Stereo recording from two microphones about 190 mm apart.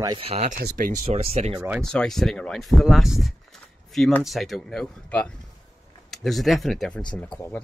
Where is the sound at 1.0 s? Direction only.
30° right (ahead or behind).